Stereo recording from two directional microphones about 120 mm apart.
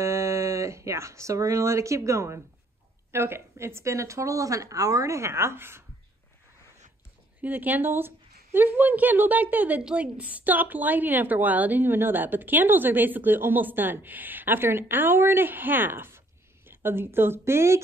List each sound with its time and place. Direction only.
0.0 s speech: 25° right (ahead or behind)
7.4 s speech: 15° right (ahead or behind)